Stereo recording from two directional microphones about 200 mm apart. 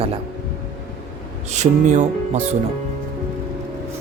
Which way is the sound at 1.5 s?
35° right (ahead or behind).